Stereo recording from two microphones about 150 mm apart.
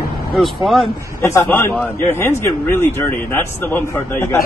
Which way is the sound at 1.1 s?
15° left (ahead or behind).